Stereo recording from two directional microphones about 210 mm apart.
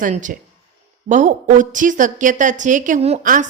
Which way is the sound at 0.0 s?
40° right (ahead or behind).